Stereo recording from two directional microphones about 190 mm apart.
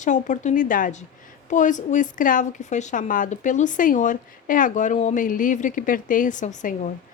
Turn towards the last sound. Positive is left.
turn(degrees=40)  # may be behind; listen again after turning